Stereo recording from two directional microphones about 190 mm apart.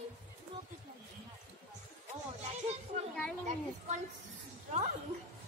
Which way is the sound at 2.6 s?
35° right (ahead or behind).